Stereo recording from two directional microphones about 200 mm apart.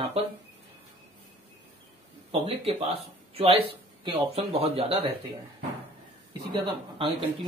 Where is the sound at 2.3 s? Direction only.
30° right (ahead or behind).